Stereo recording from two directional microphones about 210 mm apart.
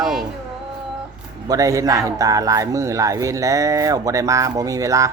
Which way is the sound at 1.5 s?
15° right (ahead or behind).